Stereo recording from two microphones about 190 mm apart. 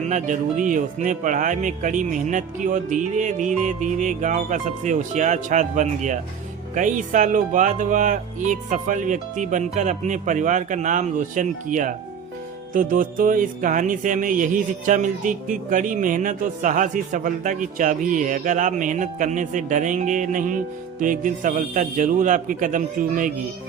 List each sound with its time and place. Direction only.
0.0 s speech: 40° right (ahead or behind)
12.7 s music: 45° right (ahead or behind)